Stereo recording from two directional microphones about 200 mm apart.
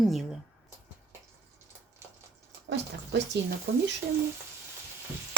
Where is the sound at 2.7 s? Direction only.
60° right (ahead or behind).